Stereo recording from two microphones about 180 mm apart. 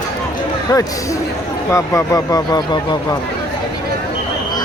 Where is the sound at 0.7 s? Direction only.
20° left (ahead or behind).